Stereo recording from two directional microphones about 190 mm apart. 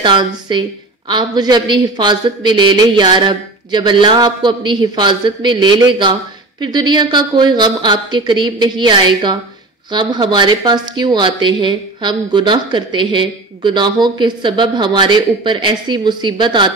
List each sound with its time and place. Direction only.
0.0 s speech: 25° right (ahead or behind)